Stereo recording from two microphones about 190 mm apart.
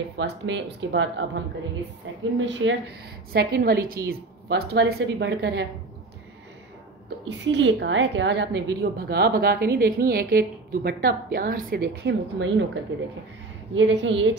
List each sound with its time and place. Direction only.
0.2 s a woman's voice: 75° right (ahead or behind)
3.3 s a woman's voice: 55° right (ahead or behind)
7.2 s a woman's voice: 70° right (ahead or behind)
8.9 s a woman's voice: 55° right (ahead or behind)
13.7 s a woman's voice: 75° right (ahead or behind)